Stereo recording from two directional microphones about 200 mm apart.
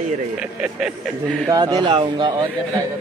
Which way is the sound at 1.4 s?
20° right (ahead or behind).